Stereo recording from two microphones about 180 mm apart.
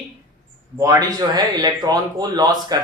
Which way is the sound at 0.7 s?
20° right (ahead or behind).